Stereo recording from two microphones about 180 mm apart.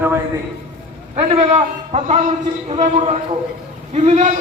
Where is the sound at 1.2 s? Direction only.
35° right (ahead or behind).